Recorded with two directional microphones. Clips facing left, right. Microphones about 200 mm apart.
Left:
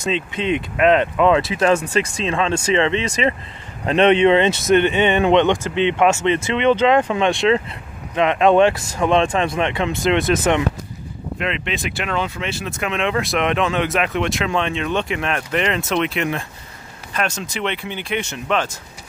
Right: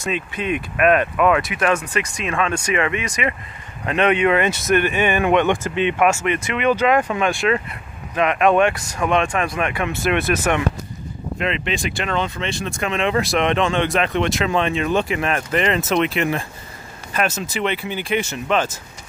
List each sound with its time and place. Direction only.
0.0 s speech: 25° left (ahead or behind)
11.3 s speech: centre (ahead or behind)